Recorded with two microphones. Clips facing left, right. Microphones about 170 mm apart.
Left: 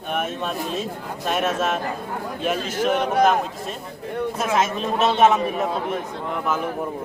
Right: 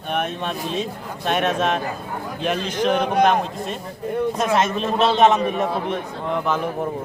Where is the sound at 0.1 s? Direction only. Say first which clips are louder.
Right 1 dB; 5° left (ahead or behind).